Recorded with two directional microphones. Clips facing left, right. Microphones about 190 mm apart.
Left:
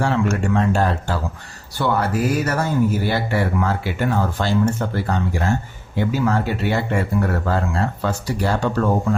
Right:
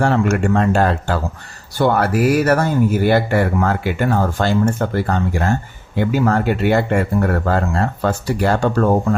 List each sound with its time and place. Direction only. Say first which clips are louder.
0.0 s speech: right 4 dB; 55° right (ahead or behind)